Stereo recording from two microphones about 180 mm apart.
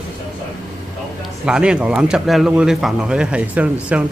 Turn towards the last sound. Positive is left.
turn(degrees=-5)  # may be behind; listen again after turning